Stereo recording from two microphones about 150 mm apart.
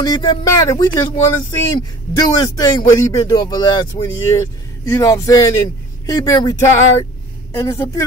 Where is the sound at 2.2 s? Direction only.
25° left (ahead or behind).